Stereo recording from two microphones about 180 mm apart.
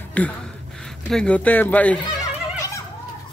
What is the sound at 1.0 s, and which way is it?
Speech, 5° left (ahead or behind).